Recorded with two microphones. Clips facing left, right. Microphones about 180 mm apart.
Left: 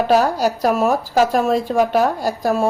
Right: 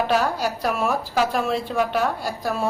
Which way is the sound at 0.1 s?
40° left (ahead or behind).